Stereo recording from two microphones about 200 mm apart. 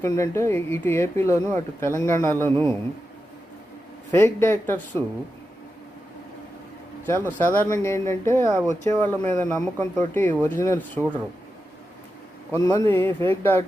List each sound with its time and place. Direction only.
0.0 s speech: 15° left (ahead or behind)
4.1 s speech: 10° left (ahead or behind)
7.0 s speech: 10° left (ahead or behind)
12.5 s speech: 15° left (ahead or behind)